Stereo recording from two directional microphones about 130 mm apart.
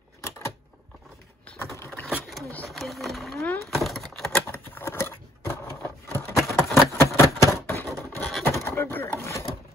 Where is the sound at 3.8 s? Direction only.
Centre (ahead or behind).